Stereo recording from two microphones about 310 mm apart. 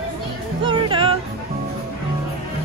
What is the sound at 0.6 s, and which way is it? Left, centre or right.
Speech, centre.